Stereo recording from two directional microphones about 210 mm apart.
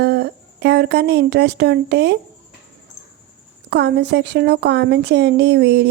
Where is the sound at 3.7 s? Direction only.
55° right (ahead or behind).